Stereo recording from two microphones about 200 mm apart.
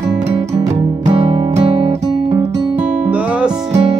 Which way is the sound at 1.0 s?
30° right (ahead or behind).